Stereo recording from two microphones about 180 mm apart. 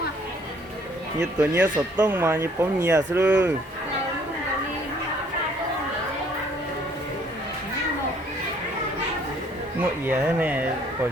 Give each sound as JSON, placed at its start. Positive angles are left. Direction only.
{"t": 1.4, "sound": "speech", "side_deg": -15}
{"t": 10.0, "sound": "speech", "side_deg": -10}